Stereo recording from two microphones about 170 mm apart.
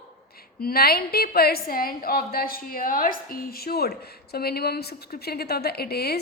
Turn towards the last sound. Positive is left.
turn(degrees=65)  # may be behind; listen again after turning